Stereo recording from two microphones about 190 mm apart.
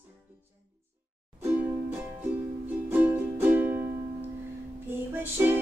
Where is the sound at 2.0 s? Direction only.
10° right (ahead or behind).